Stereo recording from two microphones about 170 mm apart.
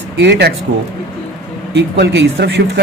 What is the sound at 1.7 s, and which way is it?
Speech, 90° right.